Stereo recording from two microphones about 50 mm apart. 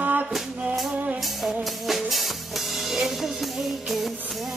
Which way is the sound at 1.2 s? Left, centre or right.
Centre.